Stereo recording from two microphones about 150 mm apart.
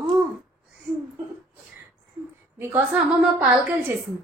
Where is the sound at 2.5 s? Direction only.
15° right (ahead or behind).